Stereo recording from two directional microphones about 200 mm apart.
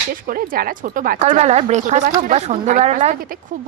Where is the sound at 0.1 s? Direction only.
45° right (ahead or behind).